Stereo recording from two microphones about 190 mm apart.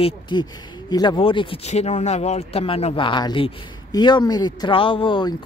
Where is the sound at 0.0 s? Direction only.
25° left (ahead or behind).